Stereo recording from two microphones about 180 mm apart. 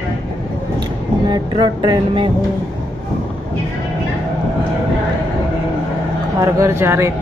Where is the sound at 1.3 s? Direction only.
25° right (ahead or behind).